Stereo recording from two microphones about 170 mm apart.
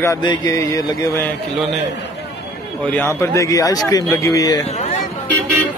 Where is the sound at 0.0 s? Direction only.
20° left (ahead or behind).